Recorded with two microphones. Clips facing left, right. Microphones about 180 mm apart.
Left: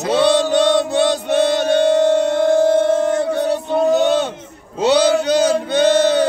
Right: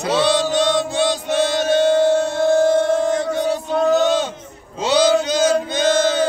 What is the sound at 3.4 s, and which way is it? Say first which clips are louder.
Male singing: left 2 dB; 60° left (ahead or behind).